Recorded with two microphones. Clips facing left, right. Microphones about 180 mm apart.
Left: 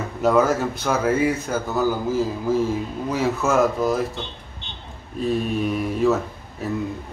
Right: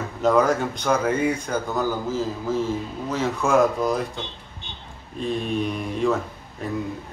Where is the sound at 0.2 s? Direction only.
5° left (ahead or behind).